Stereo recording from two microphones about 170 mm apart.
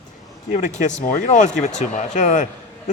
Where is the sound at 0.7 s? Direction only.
45° left (ahead or behind).